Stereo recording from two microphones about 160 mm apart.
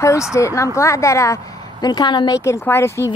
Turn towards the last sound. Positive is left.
turn(degrees=15)  # may be behind; listen again after turning